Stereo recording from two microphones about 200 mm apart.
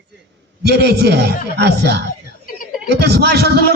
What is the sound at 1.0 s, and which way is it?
A man's voice, 55° right (ahead or behind).